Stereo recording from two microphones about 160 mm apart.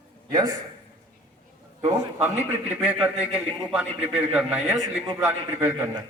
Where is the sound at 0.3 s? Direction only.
25° right (ahead or behind).